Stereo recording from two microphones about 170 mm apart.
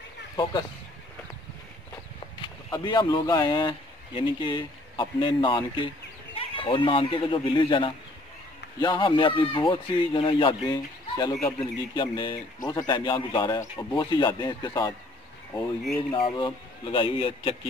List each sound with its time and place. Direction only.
0.4 s speech: 30° left (ahead or behind)
2.4 s speech: 25° left (ahead or behind)
16.1 s speech: 30° left (ahead or behind)